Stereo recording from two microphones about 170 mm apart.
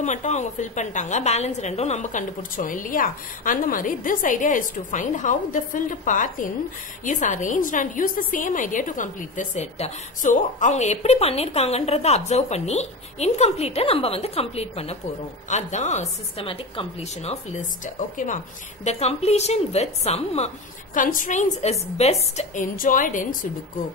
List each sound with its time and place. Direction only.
0.0 s a woman's voice: 45° left (ahead or behind)